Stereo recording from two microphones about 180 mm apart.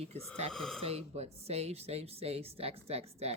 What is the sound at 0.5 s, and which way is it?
Speech, centre (ahead or behind).